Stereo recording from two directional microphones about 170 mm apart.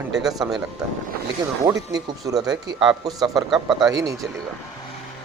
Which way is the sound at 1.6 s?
20° right (ahead or behind).